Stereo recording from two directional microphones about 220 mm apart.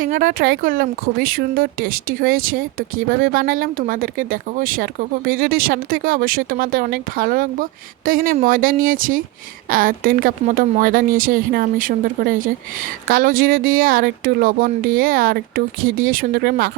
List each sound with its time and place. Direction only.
0.0 s speech: 40° right (ahead or behind)